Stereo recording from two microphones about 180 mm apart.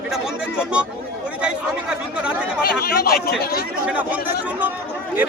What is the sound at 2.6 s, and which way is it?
Speech, 55° left (ahead or behind).